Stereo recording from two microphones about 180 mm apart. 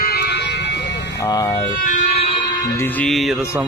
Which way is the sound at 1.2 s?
20° left (ahead or behind).